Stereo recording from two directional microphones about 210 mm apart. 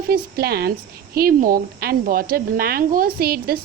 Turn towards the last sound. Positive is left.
turn(degrees=-45)  # may be behind; listen again after turning